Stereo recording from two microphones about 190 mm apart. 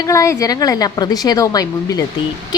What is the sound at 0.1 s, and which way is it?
A woman's voice, 15° left (ahead or behind).